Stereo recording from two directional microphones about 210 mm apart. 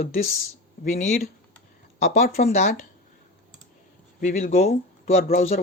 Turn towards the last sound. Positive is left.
turn(degrees=30)  # may be behind; listen again after turning